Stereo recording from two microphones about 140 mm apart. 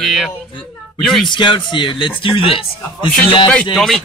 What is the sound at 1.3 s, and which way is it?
A man's voice, 35° left (ahead or behind).